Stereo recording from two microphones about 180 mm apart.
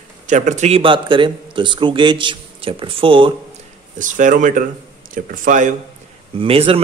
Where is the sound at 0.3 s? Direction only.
40° right (ahead or behind).